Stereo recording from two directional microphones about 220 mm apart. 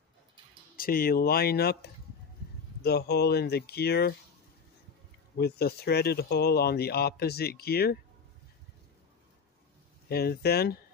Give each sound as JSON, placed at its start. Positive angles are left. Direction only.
{"t": 0.7, "sound": "speech", "side_deg": 40}
{"t": 5.4, "sound": "speech", "side_deg": 45}
{"t": 10.0, "sound": "speech", "side_deg": 45}